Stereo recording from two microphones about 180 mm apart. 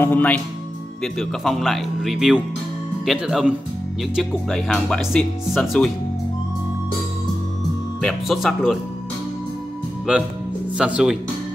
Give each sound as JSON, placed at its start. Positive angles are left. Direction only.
{"t": 0.0, "sound": "speech", "side_deg": 10}
{"t": 8.0, "sound": "speech", "side_deg": 0}
{"t": 10.1, "sound": "speech", "side_deg": -5}